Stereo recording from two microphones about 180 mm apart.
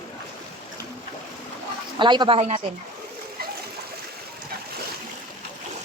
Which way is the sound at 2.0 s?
25° right (ahead or behind).